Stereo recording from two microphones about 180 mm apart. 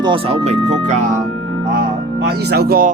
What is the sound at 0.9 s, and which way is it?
Speech, 40° right (ahead or behind).